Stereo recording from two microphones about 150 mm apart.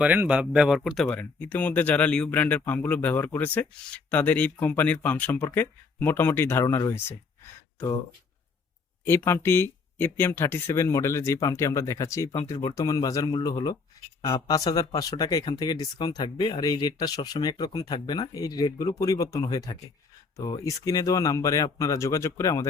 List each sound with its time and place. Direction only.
0.0 s speech: 10° right (ahead or behind); by 7.0 s 20° left (ahead or behind)
9.0 s speech: 15° left (ahead or behind)